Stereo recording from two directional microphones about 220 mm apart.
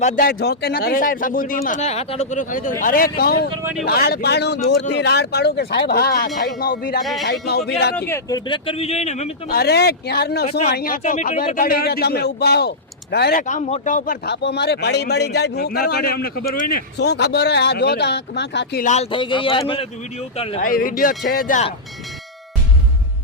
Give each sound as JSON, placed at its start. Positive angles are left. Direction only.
{"t": 0.0, "sound": "speech", "side_deg": 40}
{"t": 3.6, "sound": "speech", "side_deg": -10}
{"t": 3.8, "sound": "speech", "side_deg": 45}
{"t": 7.0, "sound": "speech", "side_deg": 0}
{"t": 7.9, "sound": "speech", "side_deg": 10}
{"t": 8.4, "sound": "a man's voice", "side_deg": 25}
{"t": 9.6, "sound": "speech", "side_deg": 45}
{"t": 13.5, "sound": "speech", "side_deg": 30}
{"t": 18.9, "sound": "a man's voice", "side_deg": 25}
{"t": 20.6, "sound": "speech", "side_deg": 40}